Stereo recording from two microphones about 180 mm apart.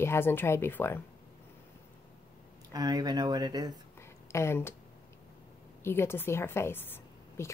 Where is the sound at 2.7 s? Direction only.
20° right (ahead or behind).